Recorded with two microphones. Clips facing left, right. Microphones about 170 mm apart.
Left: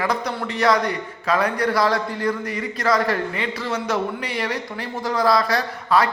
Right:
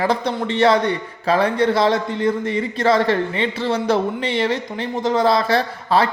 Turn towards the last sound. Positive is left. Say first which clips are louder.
# right 2 dB
turn(degrees=-30)  # may be behind; listen again after turning